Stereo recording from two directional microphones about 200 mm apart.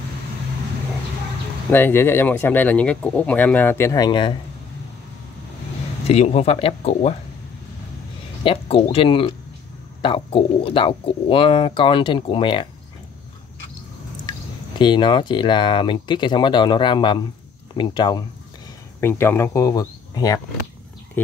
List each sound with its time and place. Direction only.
1.7 s speech: 10° left (ahead or behind)
6.0 s speech: 30° left (ahead or behind)
8.5 s speech: 25° left (ahead or behind)
14.8 s speech: 25° left (ahead or behind)
18.9 s speech: 10° left (ahead or behind)